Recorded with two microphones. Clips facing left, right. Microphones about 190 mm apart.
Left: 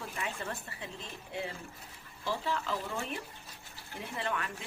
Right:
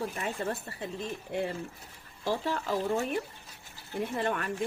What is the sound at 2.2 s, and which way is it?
Speech, 45° right (ahead or behind).